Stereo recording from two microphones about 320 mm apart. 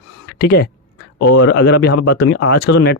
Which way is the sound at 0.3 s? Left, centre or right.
Left.